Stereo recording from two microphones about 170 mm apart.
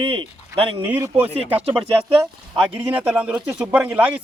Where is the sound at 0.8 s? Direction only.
10° right (ahead or behind).